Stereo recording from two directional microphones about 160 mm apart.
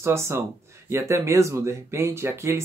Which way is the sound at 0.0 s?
15° right (ahead or behind).